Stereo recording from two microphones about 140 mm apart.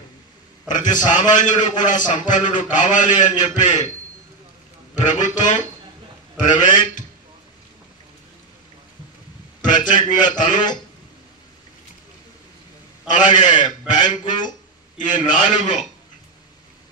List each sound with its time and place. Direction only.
0.7 s a man's voice: 65° left (ahead or behind)
4.9 s a man's voice: 60° left (ahead or behind)
9.7 s a man's voice: 65° left (ahead or behind)
13.1 s a man's voice: 65° left (ahead or behind)